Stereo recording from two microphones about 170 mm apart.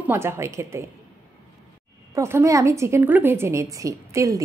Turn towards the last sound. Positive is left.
turn(degrees=-20)  # may be behind; listen again after turning